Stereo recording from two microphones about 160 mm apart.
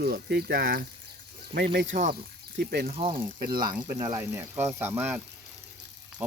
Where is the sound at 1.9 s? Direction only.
55° right (ahead or behind).